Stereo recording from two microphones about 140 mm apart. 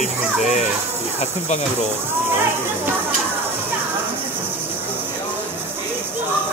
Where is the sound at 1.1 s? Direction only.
55° left (ahead or behind).